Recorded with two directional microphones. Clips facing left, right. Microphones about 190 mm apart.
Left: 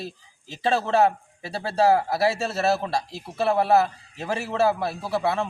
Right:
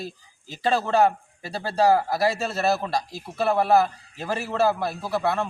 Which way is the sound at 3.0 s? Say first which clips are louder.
Even; 25° left (ahead or behind).